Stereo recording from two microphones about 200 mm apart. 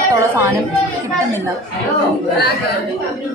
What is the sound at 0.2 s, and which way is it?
Speech, 10° right (ahead or behind).